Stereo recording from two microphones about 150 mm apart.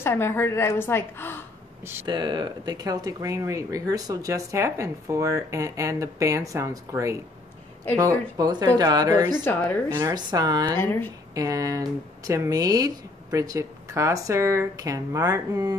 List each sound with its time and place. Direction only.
0.0 s a woman's voice: 15° left (ahead or behind)
2.0 s speech: 30° right (ahead or behind)
8.4 s speech: 25° right (ahead or behind)
9.4 s a woman's voice: 10° left (ahead or behind)
9.9 s speech: 25° right (ahead or behind)
10.8 s a woman's voice: 15° left (ahead or behind)
11.3 s speech: 20° right (ahead or behind)